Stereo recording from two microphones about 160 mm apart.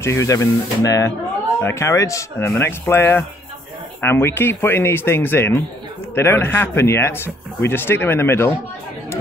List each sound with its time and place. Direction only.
0.0 s speech: 20° left (ahead or behind)